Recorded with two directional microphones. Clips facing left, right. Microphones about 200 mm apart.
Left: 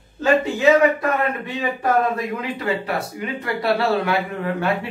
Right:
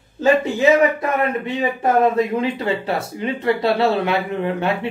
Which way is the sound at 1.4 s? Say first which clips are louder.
Right 3 dB; 25° right (ahead or behind).